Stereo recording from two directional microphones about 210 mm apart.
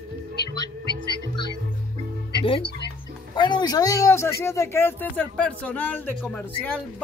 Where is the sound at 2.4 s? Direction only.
25° left (ahead or behind).